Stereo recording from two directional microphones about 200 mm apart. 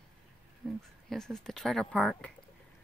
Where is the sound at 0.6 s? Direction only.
Centre (ahead or behind).